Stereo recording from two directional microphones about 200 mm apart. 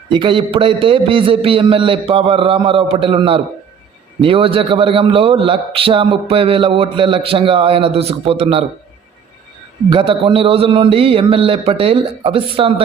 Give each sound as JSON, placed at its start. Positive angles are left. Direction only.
{"t": 0.1, "sound": "a man's voice", "side_deg": -25}
{"t": 9.9, "sound": "a man's voice", "side_deg": -25}